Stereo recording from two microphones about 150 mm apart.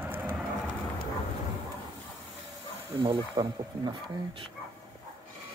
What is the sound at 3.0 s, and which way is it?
Speech, 35° right (ahead or behind).